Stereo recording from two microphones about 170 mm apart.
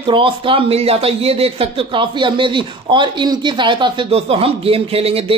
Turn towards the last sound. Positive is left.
turn(degrees=-35)  # may be behind; listen again after turning